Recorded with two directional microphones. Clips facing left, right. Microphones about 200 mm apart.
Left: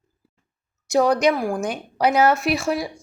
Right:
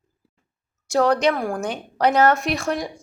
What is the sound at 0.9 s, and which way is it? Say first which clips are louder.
Speech: left 1 dB; 10° left (ahead or behind).